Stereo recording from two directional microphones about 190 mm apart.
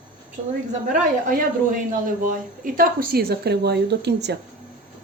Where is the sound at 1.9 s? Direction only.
45° right (ahead or behind); by 4.4 s 60° right (ahead or behind).